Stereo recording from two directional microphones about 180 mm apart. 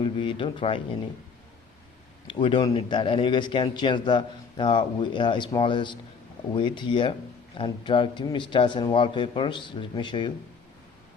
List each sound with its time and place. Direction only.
0.0 s speech: 30° left (ahead or behind)
2.2 s speech: 30° left (ahead or behind)